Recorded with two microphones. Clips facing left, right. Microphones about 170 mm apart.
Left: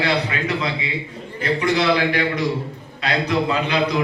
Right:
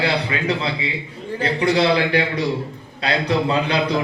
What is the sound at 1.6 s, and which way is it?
A man's voice, 30° right (ahead or behind).